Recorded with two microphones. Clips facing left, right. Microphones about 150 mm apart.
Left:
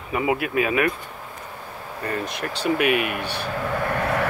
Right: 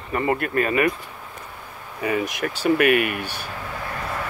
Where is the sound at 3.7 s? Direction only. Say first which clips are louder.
Left 6 dB; 60° left (ahead or behind).